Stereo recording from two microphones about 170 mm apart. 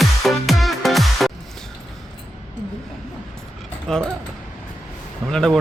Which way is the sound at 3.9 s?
5° left (ahead or behind).